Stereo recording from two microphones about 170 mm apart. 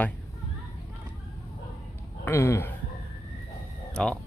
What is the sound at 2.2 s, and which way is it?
Speech, 15° left (ahead or behind).